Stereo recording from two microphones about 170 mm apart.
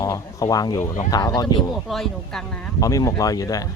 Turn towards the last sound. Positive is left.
turn(degrees=20)  # may be behind; listen again after turning